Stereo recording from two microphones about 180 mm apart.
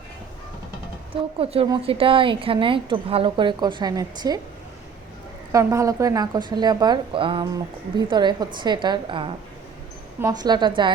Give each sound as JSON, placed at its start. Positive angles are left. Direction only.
{"t": 1.1, "sound": "speech", "side_deg": -30}
{"t": 5.5, "sound": "speech", "side_deg": -15}